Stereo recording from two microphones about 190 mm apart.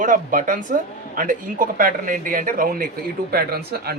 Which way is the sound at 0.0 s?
45° right (ahead or behind).